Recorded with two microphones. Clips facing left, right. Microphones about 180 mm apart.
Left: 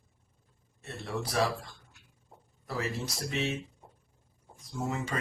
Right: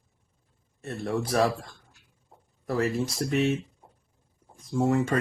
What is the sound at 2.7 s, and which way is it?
Speech, 55° right (ahead or behind).